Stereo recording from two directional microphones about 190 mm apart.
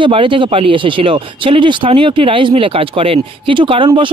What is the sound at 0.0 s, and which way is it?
Speech, 25° right (ahead or behind).